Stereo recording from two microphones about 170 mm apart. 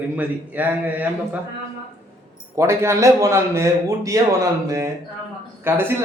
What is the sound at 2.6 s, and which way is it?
A man's voice, 15° right (ahead or behind).